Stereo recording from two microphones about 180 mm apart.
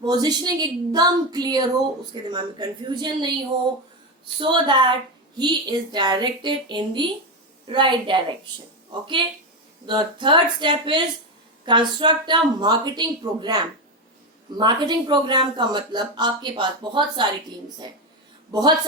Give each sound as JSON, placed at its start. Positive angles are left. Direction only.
{"t": 0.0, "sound": "a woman's voice", "side_deg": -20}
{"t": 4.4, "sound": "a woman's voice", "side_deg": -25}
{"t": 18.5, "sound": "a woman's voice", "side_deg": -20}